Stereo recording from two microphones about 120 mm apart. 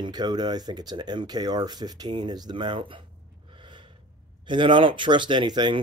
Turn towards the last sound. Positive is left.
turn(degrees=-35)  # may be behind; listen again after turning